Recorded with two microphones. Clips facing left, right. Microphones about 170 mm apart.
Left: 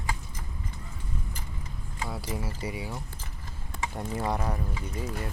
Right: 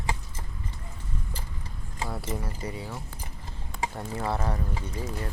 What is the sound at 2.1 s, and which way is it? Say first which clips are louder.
Speech: even; centre (ahead or behind).